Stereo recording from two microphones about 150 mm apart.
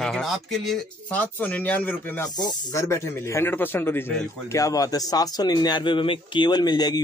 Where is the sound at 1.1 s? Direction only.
10° left (ahead or behind).